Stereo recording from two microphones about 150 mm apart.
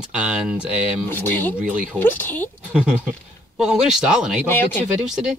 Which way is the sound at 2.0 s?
15° left (ahead or behind).